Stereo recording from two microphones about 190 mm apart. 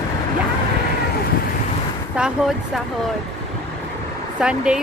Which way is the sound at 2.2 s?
5° right (ahead or behind).